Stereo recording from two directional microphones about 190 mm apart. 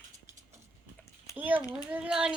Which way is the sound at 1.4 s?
10° right (ahead or behind).